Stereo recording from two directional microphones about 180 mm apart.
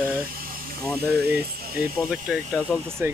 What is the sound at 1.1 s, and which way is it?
Speech, 65° right (ahead or behind).